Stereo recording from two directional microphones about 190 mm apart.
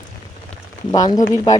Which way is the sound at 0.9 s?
20° left (ahead or behind).